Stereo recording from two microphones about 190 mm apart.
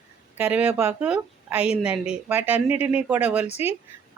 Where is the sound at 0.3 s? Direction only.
10° right (ahead or behind).